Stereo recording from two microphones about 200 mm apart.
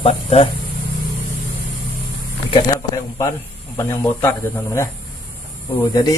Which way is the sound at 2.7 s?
15° left (ahead or behind).